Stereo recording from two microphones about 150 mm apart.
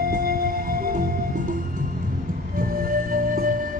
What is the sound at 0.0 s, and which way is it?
Music, 75° right (ahead or behind).